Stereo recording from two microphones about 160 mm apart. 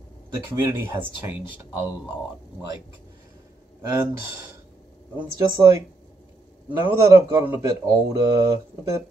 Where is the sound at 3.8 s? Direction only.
15° right (ahead or behind).